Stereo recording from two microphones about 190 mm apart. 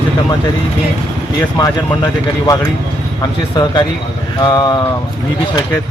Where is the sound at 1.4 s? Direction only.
20° left (ahead or behind).